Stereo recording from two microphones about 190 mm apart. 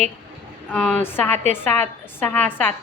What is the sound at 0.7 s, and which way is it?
A woman's voice, 5° left (ahead or behind).